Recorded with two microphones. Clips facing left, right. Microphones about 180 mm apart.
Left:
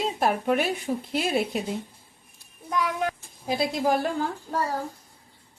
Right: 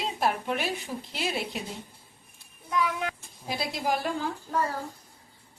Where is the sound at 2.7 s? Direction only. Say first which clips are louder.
Left 2 dB; 40° left (ahead or behind).